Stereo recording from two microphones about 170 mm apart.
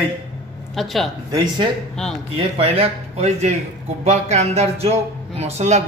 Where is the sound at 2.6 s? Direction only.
35° right (ahead or behind).